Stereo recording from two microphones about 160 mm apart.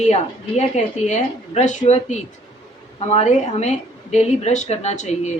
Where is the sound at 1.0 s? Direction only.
45° left (ahead or behind).